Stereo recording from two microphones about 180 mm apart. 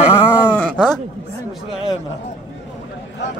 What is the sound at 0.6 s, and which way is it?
Speech, 5° left (ahead or behind).